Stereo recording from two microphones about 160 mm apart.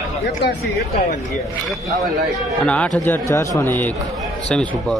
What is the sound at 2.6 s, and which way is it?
A man's voice, 5° left (ahead or behind).